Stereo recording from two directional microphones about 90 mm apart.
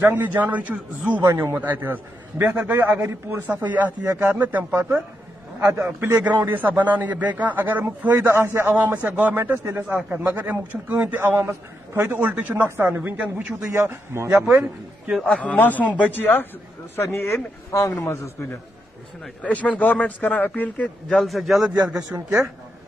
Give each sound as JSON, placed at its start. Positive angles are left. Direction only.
{"t": 0.0, "sound": "a man's voice", "side_deg": -25}
{"t": 11.1, "sound": "a man's voice", "side_deg": -25}
{"t": 13.2, "sound": "a man's voice", "side_deg": -10}
{"t": 13.7, "sound": "a man's voice", "side_deg": -30}
{"t": 15.2, "sound": "a man's voice", "side_deg": 15}
{"t": 19.4, "sound": "speech", "side_deg": 15}
{"t": 21.1, "sound": "a man's voice", "side_deg": 0}
{"t": 21.9, "sound": "a man's voice", "side_deg": -35}